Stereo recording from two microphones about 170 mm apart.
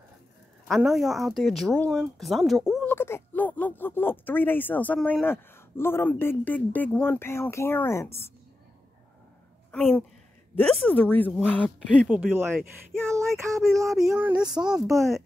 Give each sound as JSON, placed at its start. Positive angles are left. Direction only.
{"t": 0.7, "sound": "speech", "side_deg": 0}
{"t": 2.9, "sound": "speech", "side_deg": 15}
{"t": 10.5, "sound": "speech", "side_deg": 5}
{"t": 12.1, "sound": "speech", "side_deg": -10}
{"t": 13.9, "sound": "speech", "side_deg": -5}